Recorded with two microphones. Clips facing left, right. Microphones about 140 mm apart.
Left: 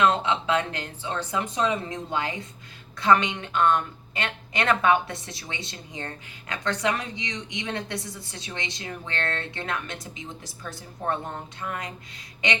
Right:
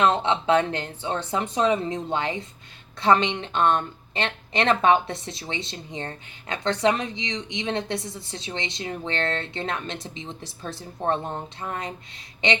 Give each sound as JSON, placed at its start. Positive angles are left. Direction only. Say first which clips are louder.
{"t": 0.0, "sound": "a woman's voice", "louder": "right 1 dB", "side_deg": -25}